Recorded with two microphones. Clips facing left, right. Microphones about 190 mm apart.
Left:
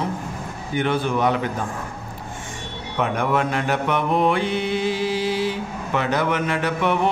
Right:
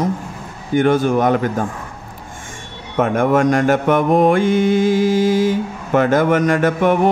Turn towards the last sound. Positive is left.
turn(degrees=-45)  # may be behind; listen again after turning